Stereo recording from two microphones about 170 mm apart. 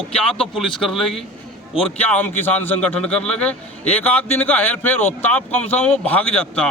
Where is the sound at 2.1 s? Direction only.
10° left (ahead or behind).